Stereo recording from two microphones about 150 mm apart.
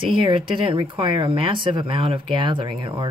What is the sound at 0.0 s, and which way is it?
Speech, 35° right (ahead or behind).